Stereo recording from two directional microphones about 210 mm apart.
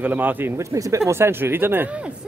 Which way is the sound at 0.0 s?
10° right (ahead or behind).